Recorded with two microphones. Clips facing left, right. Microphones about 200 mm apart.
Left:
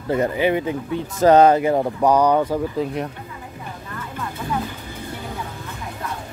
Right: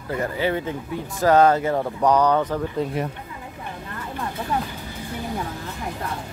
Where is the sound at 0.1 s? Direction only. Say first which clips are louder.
Left 5 dB; 20° left (ahead or behind).